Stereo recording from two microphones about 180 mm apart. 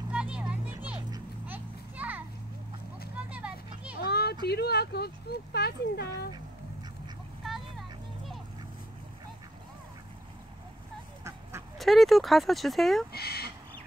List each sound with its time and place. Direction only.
0.1 s a sound: 5° right (ahead or behind)
3.3 s children playing: 5° right (ahead or behind)
4.0 s a sound: 60° left (ahead or behind)
4.5 s speech: 65° left (ahead or behind)
11.8 s speech: centre (ahead or behind)
13.1 s speech: 60° left (ahead or behind)